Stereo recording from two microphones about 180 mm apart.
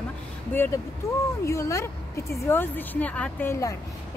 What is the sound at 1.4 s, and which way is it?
A woman's voice, 15° left (ahead or behind).